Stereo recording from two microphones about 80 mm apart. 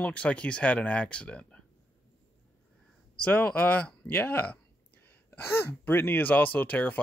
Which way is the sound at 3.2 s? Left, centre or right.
Centre.